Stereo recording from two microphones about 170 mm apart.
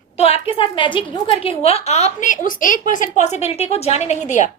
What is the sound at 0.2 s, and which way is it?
A woman's voice, 35° left (ahead or behind).